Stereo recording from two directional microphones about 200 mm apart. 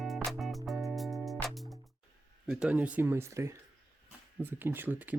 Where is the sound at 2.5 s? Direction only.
5° right (ahead or behind).